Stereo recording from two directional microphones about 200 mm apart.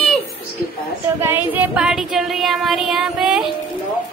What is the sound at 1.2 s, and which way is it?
Child singing, 10° right (ahead or behind).